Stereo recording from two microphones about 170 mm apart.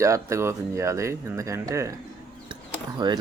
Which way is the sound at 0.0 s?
15° right (ahead or behind).